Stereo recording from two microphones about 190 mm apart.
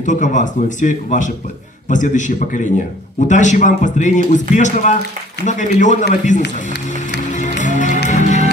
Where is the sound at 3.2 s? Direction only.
40° left (ahead or behind).